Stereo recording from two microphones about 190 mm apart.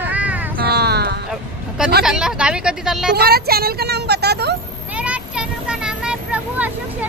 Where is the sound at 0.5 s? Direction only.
55° right (ahead or behind).